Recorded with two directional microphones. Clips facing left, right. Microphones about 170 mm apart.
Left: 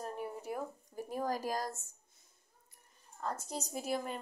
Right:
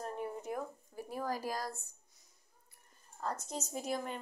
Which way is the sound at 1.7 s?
45° left (ahead or behind).